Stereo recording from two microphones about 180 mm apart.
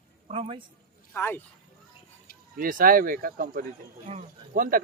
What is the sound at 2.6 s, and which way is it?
Speech, 50° right (ahead or behind).